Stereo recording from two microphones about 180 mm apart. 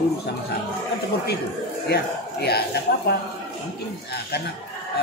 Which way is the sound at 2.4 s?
65° left (ahead or behind).